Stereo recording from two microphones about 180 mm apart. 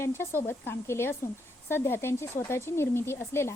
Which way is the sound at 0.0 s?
15° left (ahead or behind).